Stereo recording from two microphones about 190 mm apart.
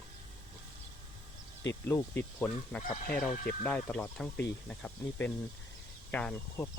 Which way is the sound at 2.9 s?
45° left (ahead or behind).